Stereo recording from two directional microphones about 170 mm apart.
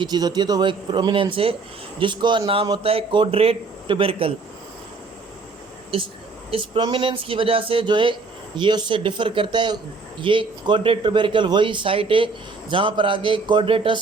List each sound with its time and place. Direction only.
0.0 s speech: 25° right (ahead or behind)
6.5 s speech: 30° right (ahead or behind)